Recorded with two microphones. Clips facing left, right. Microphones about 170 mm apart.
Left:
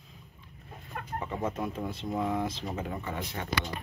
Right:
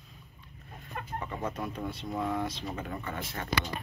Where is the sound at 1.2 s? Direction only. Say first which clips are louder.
Left 3 dB; 15° left (ahead or behind).